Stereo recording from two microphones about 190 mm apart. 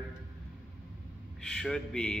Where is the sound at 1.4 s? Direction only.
5° left (ahead or behind).